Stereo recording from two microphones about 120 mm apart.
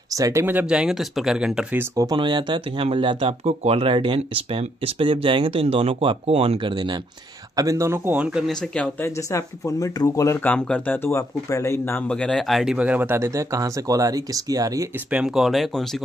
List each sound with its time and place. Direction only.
0.1 s speech: 25° right (ahead or behind); by 1.8 s 5° right (ahead or behind)
2.0 s speech: 40° right (ahead or behind)
7.5 s speech: 25° right (ahead or behind); by 8.5 s 10° right (ahead or behind)
8.5 s speech: 5° left (ahead or behind)
9.0 s speech: 25° left (ahead or behind)
10.4 s speech: 15° left (ahead or behind)
12.1 s speech: 5° left (ahead or behind)
12.7 s speech: 10° right (ahead or behind); by 14.9 s 30° right (ahead or behind)
15.0 s speech: 5° right (ahead or behind)